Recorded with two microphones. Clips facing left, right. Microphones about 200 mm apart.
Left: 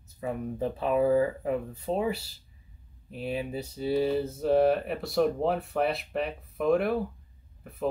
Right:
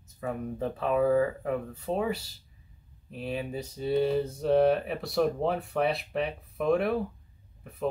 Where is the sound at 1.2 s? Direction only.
15° left (ahead or behind).